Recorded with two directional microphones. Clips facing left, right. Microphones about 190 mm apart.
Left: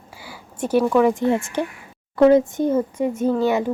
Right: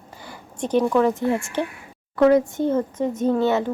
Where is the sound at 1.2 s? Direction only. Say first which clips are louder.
Left 2 dB; 20° left (ahead or behind).